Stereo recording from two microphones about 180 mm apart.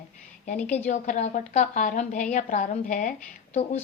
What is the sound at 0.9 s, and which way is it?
A woman's voice, 45° left (ahead or behind).